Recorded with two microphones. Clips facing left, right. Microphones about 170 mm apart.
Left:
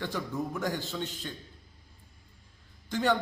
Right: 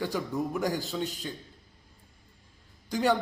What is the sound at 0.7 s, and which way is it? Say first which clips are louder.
Speech: right 3 dB; 40° right (ahead or behind).